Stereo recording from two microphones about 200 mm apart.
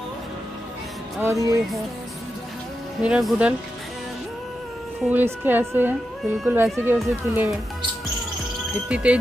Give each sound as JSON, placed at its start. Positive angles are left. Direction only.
{"t": 1.2, "sound": "speech", "side_deg": -15}
{"t": 3.0, "sound": "speech", "side_deg": -5}
{"t": 5.1, "sound": "speech", "side_deg": -10}
{"t": 8.8, "sound": "speech", "side_deg": -5}